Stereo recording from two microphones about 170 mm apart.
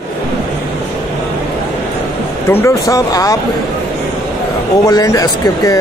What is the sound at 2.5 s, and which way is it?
Speech, 15° left (ahead or behind).